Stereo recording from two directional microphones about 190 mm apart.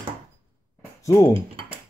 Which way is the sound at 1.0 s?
15° left (ahead or behind).